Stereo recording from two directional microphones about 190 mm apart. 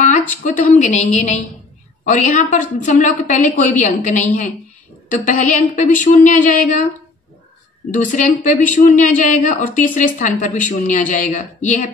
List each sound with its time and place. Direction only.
0.3 s a woman's voice: 40° left (ahead or behind)
7.9 s a woman's voice: 40° left (ahead or behind)